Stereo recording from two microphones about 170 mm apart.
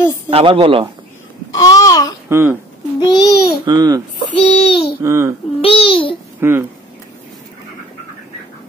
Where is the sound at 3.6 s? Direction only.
20° right (ahead or behind).